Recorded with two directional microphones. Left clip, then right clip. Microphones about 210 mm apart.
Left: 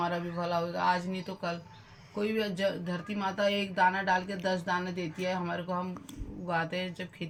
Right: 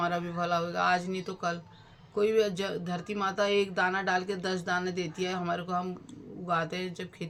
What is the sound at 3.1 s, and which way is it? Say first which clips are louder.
Speech: right 3 dB; 25° right (ahead or behind).